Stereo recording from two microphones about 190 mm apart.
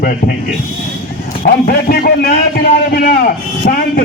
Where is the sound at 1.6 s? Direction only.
55° left (ahead or behind).